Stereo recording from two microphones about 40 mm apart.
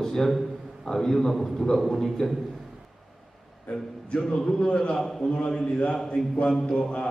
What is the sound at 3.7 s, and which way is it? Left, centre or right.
A man's voice, left.